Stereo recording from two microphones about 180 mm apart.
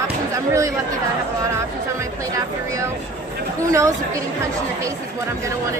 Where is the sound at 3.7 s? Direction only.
15° right (ahead or behind).